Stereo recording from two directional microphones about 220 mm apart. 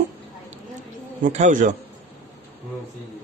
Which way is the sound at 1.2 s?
35° right (ahead or behind).